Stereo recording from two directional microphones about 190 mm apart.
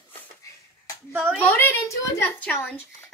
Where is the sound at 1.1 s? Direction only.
10° right (ahead or behind).